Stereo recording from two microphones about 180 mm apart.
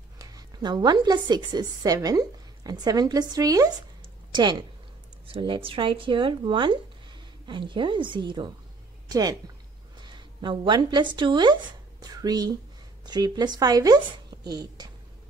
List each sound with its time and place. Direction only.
0.2 s a woman's voice: 20° right (ahead or behind)